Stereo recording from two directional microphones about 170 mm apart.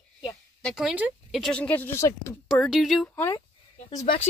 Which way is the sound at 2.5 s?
Centre (ahead or behind).